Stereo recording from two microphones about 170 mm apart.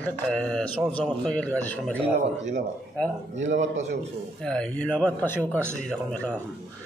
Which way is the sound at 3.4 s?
90° right.